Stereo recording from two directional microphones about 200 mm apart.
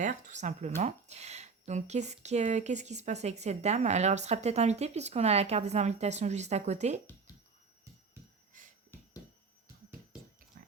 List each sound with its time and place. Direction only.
0.0 s speech: 35° right (ahead or behind)
7.3 s music: 20° left (ahead or behind)